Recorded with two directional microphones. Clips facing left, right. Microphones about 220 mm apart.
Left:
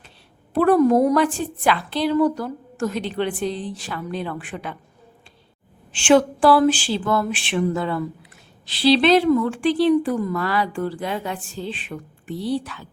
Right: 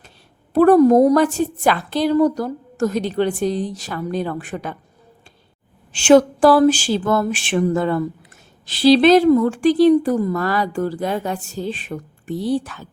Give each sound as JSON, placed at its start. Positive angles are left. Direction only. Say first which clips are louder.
{"t": 0.5, "sound": "a woman's voice", "louder": "right 5 dB", "side_deg": -40}
{"t": 5.9, "sound": "a woman's voice", "louder": "right 4 dB", "side_deg": -40}